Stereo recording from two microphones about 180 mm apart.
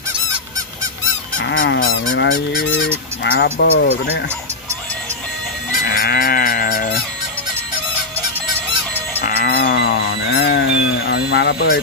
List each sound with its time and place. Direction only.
1.4 s goose: 85° left
3.3 s speech: 60° left (ahead or behind)
5.9 s cattle: 60° left (ahead or behind)
9.2 s livestock: 55° left (ahead or behind)